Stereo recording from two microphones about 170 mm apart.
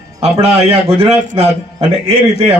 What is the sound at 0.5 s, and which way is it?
A man's voice, 35° right (ahead or behind).